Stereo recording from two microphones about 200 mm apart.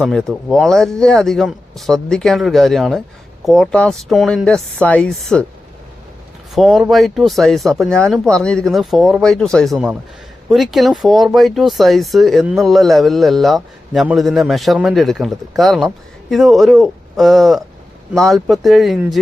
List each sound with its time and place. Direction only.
0.0 s speech: centre (ahead or behind)
6.5 s speech: centre (ahead or behind)